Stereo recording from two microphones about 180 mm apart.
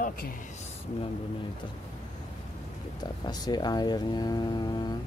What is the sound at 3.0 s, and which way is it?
Speech, 20° left (ahead or behind).